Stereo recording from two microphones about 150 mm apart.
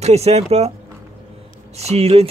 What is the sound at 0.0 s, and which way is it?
Speech, 45° right (ahead or behind).